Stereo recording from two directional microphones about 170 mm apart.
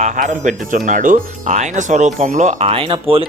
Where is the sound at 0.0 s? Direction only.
45° right (ahead or behind).